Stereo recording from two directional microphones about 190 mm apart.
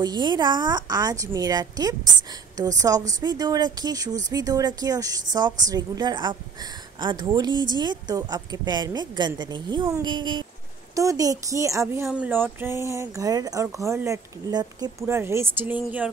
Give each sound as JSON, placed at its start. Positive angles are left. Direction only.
{"t": 0.0, "sound": "a woman's voice", "side_deg": -20}